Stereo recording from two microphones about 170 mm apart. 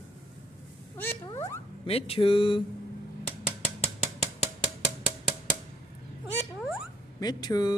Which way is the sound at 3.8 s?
40° left (ahead or behind).